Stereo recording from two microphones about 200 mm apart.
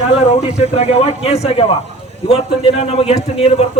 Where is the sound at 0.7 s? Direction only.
30° left (ahead or behind).